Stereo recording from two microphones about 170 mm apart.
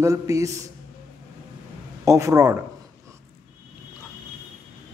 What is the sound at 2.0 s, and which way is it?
Speech, 20° right (ahead or behind).